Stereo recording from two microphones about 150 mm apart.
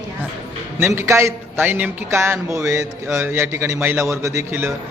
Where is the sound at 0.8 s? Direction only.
15° right (ahead or behind).